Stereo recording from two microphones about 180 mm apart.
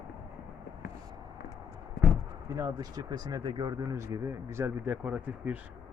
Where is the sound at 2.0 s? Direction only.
70° left (ahead or behind).